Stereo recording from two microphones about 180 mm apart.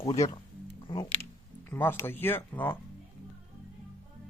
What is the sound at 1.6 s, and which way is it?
Speech, 10° left (ahead or behind).